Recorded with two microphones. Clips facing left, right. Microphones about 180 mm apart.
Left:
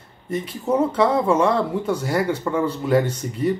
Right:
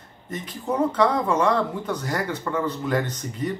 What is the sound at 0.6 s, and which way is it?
Speech, 5° left (ahead or behind).